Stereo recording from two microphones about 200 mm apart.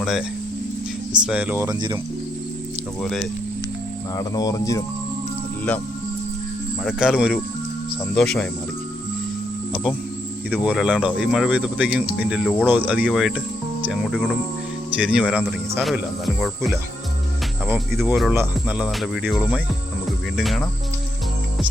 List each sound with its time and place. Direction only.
0.0 s speech: centre (ahead or behind); by 2.0 s 20° right (ahead or behind)
4.2 s speech: 20° left (ahead or behind)
6.8 s speech: 5° right (ahead or behind)
10.5 s speech: 5° right (ahead or behind)